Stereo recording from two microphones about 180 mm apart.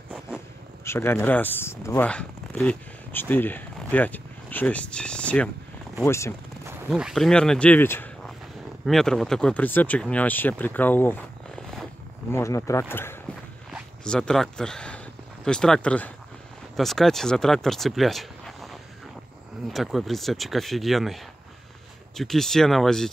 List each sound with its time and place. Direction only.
0.8 s speech: 15° left (ahead or behind)
6.9 s speech: centre (ahead or behind)
13.7 s zipper: centre (ahead or behind)
15.4 s speech: 5° left (ahead or behind)